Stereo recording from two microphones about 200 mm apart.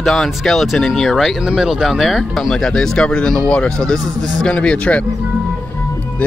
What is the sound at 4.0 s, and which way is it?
Speech, 20° right (ahead or behind).